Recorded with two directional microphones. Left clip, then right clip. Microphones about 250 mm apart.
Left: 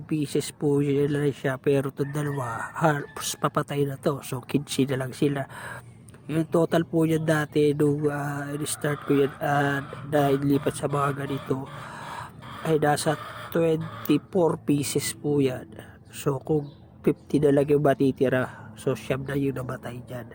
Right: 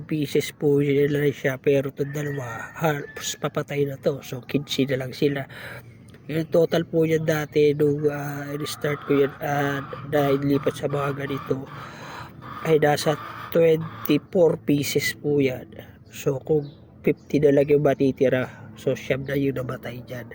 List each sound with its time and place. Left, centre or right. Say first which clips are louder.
0.1 s speech: right 3 dB; centre
12.6 s speech: right 3 dB; centre